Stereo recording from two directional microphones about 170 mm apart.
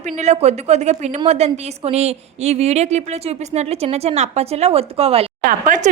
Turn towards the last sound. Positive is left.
turn(degrees=-50)  # may be behind; listen again after turning